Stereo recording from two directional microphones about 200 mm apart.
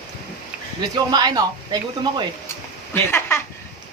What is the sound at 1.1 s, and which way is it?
Speech, 20° right (ahead or behind).